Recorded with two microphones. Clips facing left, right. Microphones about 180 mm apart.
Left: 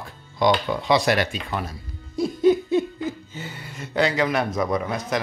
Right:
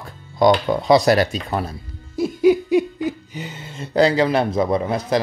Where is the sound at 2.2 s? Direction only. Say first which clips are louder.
Right 3 dB; 10° right (ahead or behind); by 5.1 s 30° right (ahead or behind).